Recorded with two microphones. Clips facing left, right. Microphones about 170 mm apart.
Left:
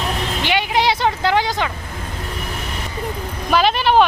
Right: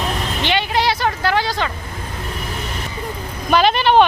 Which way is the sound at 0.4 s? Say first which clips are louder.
Even; 15° left (ahead or behind).